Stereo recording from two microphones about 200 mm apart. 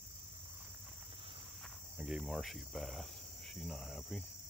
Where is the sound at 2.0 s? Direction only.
Centre (ahead or behind).